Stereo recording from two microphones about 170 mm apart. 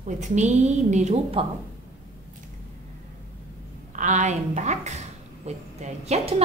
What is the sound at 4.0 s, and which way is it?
A woman's voice, 45° right (ahead or behind).